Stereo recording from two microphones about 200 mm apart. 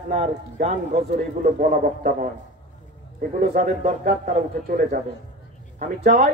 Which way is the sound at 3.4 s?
45° right (ahead or behind).